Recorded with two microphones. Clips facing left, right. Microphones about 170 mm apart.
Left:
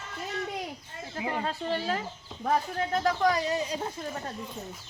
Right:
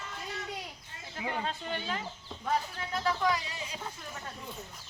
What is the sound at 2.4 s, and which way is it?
Speech, 50° left (ahead or behind).